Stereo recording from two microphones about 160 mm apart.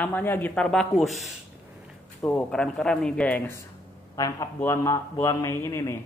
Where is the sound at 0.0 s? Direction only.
10° left (ahead or behind).